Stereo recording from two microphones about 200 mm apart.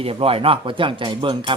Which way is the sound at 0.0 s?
30° right (ahead or behind).